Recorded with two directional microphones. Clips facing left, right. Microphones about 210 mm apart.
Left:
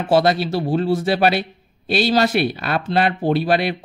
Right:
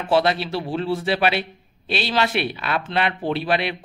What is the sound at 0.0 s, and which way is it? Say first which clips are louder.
Speech: left 3 dB; 40° left (ahead or behind).